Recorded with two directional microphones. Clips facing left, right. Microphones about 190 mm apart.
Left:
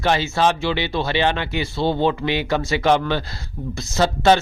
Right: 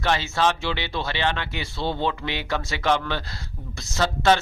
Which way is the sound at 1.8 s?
40° left (ahead or behind).